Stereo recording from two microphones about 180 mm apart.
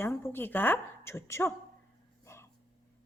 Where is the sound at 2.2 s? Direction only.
15° left (ahead or behind).